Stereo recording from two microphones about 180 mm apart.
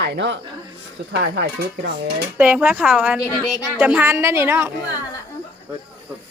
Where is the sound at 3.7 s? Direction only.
5° right (ahead or behind).